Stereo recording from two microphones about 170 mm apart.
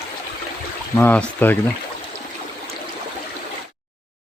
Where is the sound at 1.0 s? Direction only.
10° left (ahead or behind).